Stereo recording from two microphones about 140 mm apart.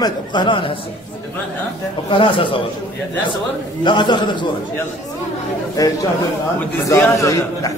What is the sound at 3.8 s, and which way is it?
Speech, 35° left (ahead or behind).